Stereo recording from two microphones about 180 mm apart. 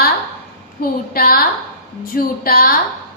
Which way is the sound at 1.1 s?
55° left (ahead or behind).